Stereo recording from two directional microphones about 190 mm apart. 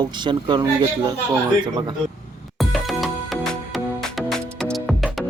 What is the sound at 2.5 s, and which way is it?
Music, centre (ahead or behind).